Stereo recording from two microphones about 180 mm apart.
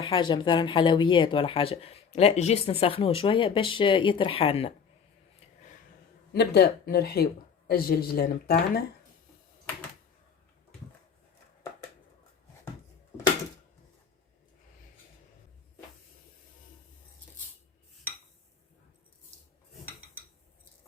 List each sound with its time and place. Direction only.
0.0 s speech: 25° left (ahead or behind)
6.3 s a woman's voice: 65° left (ahead or behind)